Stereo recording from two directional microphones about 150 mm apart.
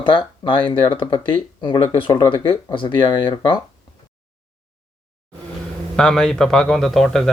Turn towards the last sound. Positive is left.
turn(degrees=0)  # may be behind; listen again after turning